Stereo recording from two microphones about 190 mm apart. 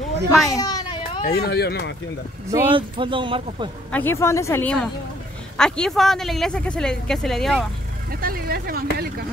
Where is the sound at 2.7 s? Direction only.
25° right (ahead or behind).